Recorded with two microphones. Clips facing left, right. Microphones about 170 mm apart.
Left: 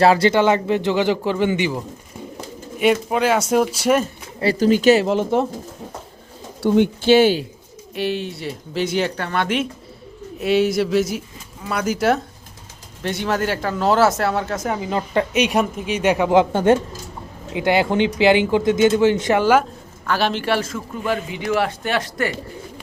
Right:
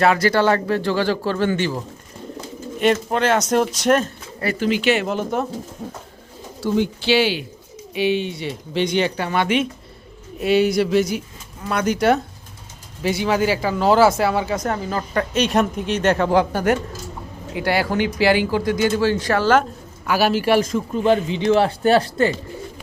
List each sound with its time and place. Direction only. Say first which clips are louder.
0.0 s speech: left 2 dB; 30° left (ahead or behind); by 4.1 s 10° left (ahead or behind)
4.5 s speech: left 5 dB; 40° left (ahead or behind)
5.0 s speech: left 4 dB; 25° left (ahead or behind)
6.6 s speech: left 4 dB; 55° left (ahead or behind)
7.9 s speech: right 3 dB; centre (ahead or behind)
14.8 s speech: left 2 dB; 20° left (ahead or behind)
15.3 s speech: even; 10° left (ahead or behind)
20.1 s a man's voice: right 3 dB; 10° right (ahead or behind); by 22.3 s 30° right (ahead or behind)